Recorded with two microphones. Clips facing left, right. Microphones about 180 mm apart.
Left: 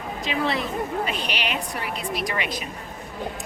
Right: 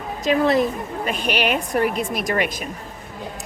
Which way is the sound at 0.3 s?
45° right (ahead or behind).